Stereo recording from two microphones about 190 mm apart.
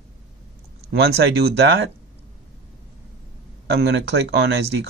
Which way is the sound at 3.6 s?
65° right (ahead or behind).